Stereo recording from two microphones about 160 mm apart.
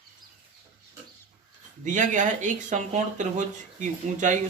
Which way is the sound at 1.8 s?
50° right (ahead or behind).